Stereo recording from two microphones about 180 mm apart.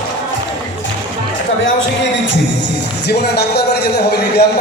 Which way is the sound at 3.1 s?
65° left (ahead or behind).